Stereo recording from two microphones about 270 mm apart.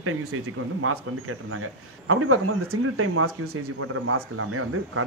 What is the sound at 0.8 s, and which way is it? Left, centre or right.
Speech, right.